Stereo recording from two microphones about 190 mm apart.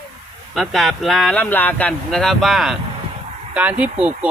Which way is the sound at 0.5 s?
Centre (ahead or behind).